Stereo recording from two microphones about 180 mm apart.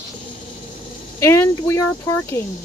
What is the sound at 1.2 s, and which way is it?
Speech, 15° left (ahead or behind).